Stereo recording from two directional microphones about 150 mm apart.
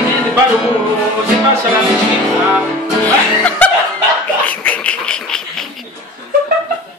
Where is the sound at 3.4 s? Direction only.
10° left (ahead or behind).